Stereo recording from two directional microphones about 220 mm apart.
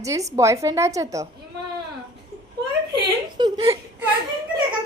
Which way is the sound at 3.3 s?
20° right (ahead or behind).